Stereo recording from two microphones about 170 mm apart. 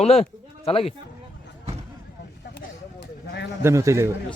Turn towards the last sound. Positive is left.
turn(degrees=-15)  # may be behind; listen again after turning